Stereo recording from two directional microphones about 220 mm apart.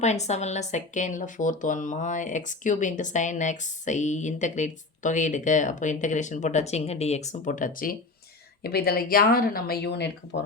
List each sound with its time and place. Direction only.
0.0 s a woman's voice: 30° left (ahead or behind); by 10.1 s 50° left (ahead or behind)